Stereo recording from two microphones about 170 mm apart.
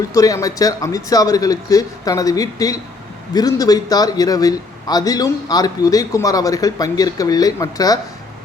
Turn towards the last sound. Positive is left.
turn(degrees=20)  # may be behind; listen again after turning